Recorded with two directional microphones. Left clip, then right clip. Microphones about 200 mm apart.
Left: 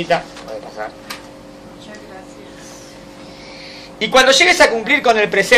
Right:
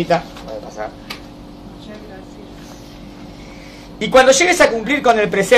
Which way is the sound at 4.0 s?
5° left (ahead or behind).